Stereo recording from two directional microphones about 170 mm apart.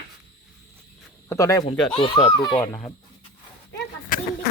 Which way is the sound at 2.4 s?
20° left (ahead or behind).